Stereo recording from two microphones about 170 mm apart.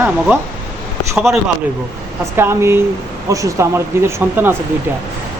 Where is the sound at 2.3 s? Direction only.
15° right (ahead or behind).